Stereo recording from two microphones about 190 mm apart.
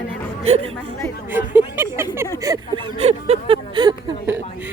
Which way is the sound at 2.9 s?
30° right (ahead or behind).